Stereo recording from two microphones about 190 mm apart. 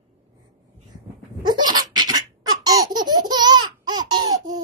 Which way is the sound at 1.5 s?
20° right (ahead or behind).